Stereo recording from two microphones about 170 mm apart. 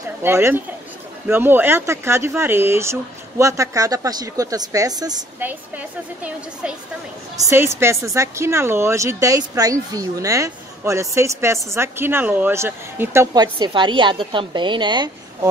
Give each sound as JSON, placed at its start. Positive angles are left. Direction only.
{"t": 0.2, "sound": "speech", "side_deg": -15}
{"t": 5.4, "sound": "speech", "side_deg": -10}